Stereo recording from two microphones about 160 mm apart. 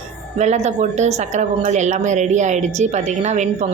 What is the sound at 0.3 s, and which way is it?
Speech, 45° right (ahead or behind).